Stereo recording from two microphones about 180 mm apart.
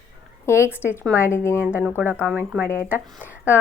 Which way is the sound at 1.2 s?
15° left (ahead or behind).